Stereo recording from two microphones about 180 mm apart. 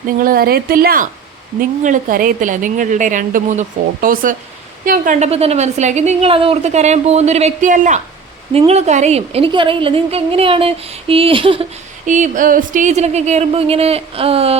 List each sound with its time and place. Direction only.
0.2 s a woman's voice: 55° right (ahead or behind); by 11.6 s 30° right (ahead or behind)
12.0 s a woman's voice: 45° right (ahead or behind)